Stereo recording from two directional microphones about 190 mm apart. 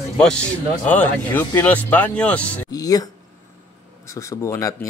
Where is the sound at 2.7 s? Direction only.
20° left (ahead or behind).